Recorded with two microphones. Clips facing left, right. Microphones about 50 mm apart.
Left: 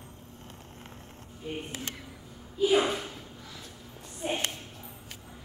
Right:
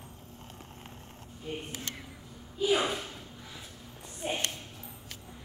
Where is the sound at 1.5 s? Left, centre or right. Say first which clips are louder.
Left 2 dB; centre.